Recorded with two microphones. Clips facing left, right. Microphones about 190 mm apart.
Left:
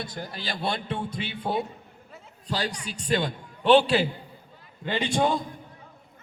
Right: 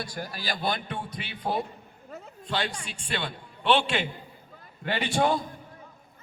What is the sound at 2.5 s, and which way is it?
A man's voice, 40° left (ahead or behind).